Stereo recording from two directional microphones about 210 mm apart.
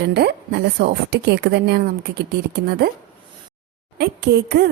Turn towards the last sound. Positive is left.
turn(degrees=-50)  # may be behind; listen again after turning